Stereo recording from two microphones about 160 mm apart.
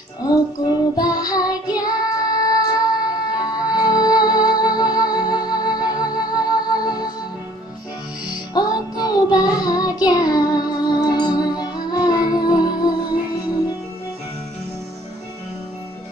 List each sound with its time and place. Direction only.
0.9 s music: 25° left (ahead or behind)
8.3 s music: 25° left (ahead or behind)